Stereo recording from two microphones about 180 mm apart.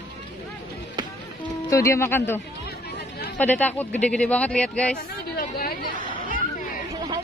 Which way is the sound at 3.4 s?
10° left (ahead or behind).